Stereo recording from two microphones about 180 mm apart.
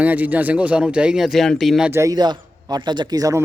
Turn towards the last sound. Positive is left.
turn(degrees=-20)  # may be behind; listen again after turning